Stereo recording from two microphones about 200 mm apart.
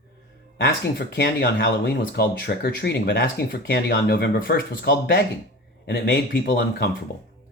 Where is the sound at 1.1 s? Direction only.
65° left (ahead or behind).